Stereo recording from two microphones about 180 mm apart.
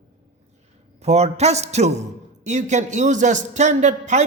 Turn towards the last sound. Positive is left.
turn(degrees=-40)  # may be behind; listen again after turning